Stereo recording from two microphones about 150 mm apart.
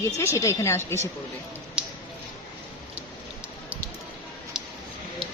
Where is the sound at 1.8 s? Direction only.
5° right (ahead or behind).